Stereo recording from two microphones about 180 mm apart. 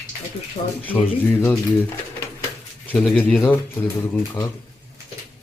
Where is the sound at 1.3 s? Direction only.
10° left (ahead or behind).